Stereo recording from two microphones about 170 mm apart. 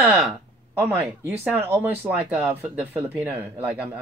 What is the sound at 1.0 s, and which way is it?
Speech, 5° right (ahead or behind).